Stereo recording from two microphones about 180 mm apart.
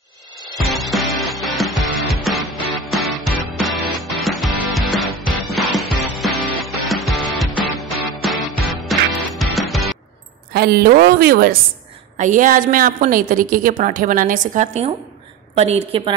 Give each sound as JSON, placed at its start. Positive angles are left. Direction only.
{"t": 0.4, "sound": "music", "side_deg": 0}
{"t": 10.5, "sound": "a woman's voice", "side_deg": -60}
{"t": 12.2, "sound": "a woman's voice", "side_deg": -45}